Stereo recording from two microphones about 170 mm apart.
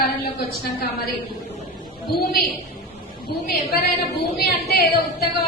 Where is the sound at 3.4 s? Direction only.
70° left (ahead or behind).